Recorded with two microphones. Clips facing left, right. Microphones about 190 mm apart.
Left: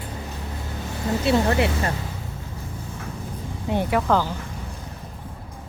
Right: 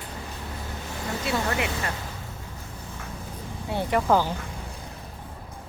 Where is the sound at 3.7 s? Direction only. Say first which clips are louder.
Left 5 dB; 20° left (ahead or behind).